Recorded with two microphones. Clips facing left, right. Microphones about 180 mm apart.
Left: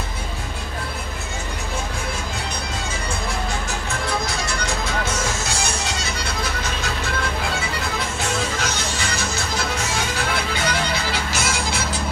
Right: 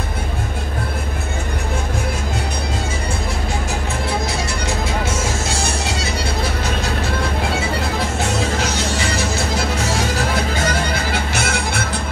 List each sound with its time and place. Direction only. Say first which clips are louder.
10.5 s music: right 3 dB; 45° right (ahead or behind)